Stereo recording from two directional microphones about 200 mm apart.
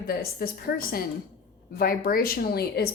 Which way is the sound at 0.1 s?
50° left (ahead or behind).